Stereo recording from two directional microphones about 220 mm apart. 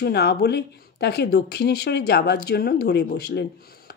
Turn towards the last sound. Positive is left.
turn(degrees=45)  # may be behind; listen again after turning